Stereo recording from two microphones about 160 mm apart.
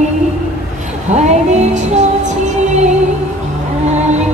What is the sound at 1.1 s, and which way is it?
Female singing, 45° right (ahead or behind).